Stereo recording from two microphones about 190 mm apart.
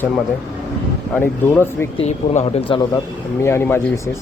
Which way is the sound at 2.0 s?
35° left (ahead or behind).